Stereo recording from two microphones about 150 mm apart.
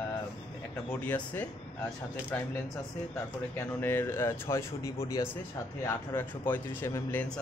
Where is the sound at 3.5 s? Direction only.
15° left (ahead or behind).